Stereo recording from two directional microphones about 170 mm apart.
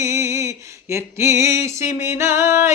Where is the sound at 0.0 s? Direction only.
15° right (ahead or behind).